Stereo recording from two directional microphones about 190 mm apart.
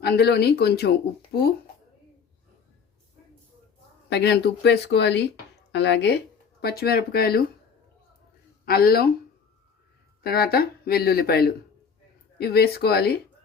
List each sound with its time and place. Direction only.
0.0 s speech: 60° left (ahead or behind)
4.1 s speech: 60° left (ahead or behind)
8.6 s speech: 55° left (ahead or behind)
10.2 s speech: 55° left (ahead or behind)